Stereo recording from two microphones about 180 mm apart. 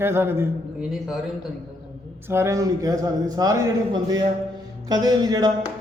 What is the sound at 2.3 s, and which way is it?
Speech, 15° right (ahead or behind).